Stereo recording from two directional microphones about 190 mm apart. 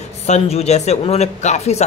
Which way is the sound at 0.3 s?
35° left (ahead or behind).